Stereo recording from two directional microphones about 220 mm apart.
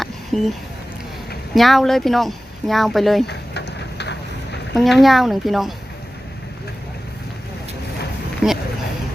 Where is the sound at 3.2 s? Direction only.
50° left (ahead or behind).